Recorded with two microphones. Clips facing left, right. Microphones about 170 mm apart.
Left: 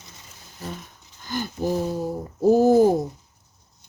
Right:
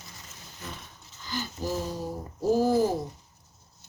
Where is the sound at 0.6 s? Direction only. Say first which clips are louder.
Left 7 dB; 35° left (ahead or behind).